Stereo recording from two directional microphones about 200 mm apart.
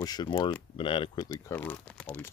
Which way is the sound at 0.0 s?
20° left (ahead or behind).